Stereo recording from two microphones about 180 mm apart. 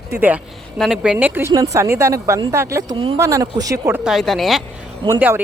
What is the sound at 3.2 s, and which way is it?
Speech, 15° right (ahead or behind).